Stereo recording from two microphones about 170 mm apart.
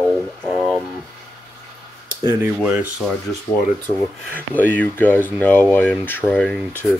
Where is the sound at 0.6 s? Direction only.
Centre (ahead or behind).